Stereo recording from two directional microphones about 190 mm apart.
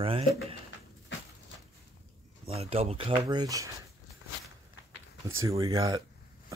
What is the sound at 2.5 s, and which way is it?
Speech, 30° right (ahead or behind).